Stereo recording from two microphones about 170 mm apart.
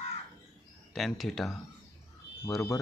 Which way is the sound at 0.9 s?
Centre (ahead or behind).